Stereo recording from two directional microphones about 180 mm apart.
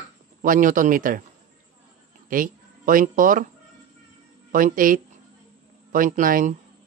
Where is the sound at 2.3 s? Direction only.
50° right (ahead or behind).